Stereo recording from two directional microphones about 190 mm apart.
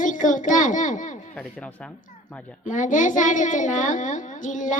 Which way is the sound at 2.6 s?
40° left (ahead or behind).